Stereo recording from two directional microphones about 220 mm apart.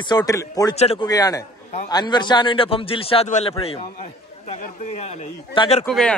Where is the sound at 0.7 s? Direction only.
30° left (ahead or behind).